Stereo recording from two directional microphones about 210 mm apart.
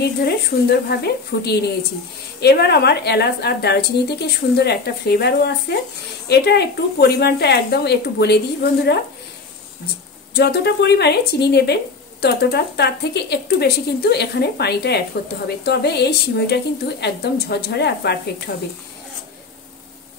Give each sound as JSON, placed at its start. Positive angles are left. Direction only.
{"t": 0.0, "sound": "speech", "side_deg": 50}
{"t": 10.3, "sound": "speech", "side_deg": 50}